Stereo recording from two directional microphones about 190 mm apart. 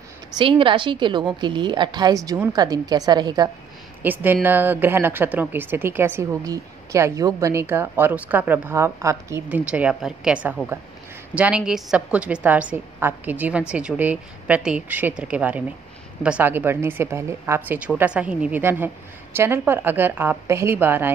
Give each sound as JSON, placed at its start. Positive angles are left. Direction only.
{"t": 0.4, "sound": "a woman's voice", "side_deg": -25}
{"t": 4.0, "sound": "a woman's voice", "side_deg": -10}